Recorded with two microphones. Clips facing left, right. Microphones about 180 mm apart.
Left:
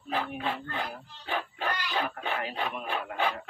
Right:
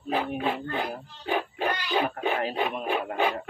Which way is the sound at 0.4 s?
15° right (ahead or behind).